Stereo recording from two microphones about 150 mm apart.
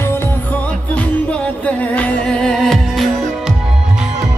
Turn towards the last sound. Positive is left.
turn(degrees=0)  # may be behind; listen again after turning